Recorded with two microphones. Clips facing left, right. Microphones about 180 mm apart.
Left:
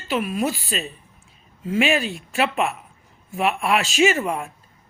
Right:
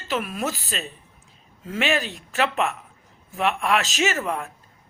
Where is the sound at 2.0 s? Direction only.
40° right (ahead or behind).